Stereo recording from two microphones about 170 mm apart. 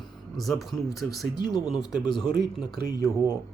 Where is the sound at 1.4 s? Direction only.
25° left (ahead or behind).